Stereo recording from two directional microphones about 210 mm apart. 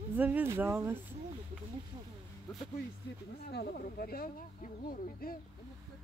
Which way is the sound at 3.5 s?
45° left (ahead or behind).